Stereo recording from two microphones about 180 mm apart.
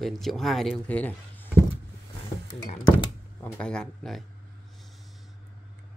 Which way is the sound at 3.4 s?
5° left (ahead or behind).